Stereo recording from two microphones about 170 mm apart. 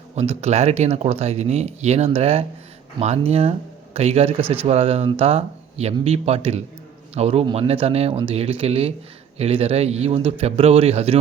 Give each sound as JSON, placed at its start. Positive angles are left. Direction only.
{"t": 0.2, "sound": "speech", "side_deg": -40}